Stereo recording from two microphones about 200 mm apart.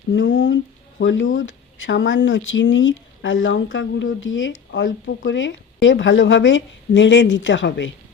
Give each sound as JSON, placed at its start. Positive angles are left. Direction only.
{"t": 0.1, "sound": "speech", "side_deg": 70}